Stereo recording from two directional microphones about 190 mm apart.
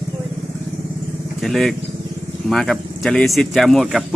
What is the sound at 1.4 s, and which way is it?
Speech, centre (ahead or behind).